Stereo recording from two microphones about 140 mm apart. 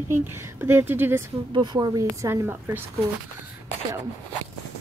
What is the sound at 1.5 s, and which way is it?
Speech, 30° right (ahead or behind).